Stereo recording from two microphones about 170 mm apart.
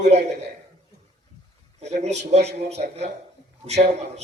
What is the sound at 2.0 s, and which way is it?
Speech, 40° right (ahead or behind).